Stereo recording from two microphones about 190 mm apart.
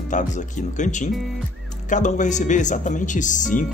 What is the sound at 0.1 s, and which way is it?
Speech, 40° left (ahead or behind).